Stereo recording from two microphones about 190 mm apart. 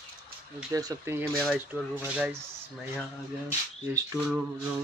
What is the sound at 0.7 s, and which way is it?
Speech, 15° right (ahead or behind).